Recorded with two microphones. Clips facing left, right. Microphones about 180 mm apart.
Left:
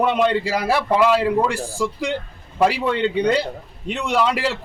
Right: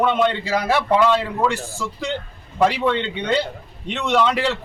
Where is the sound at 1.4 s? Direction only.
35° left (ahead or behind).